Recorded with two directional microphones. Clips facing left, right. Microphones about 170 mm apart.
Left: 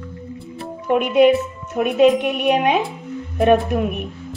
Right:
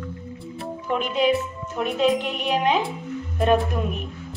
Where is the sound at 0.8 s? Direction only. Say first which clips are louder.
Left 8 dB; 60° left (ahead or behind).